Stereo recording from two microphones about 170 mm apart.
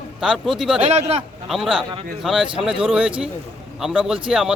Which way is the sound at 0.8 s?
40° right (ahead or behind).